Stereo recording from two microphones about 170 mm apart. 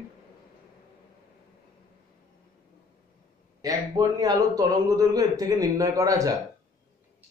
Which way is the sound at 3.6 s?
20° right (ahead or behind).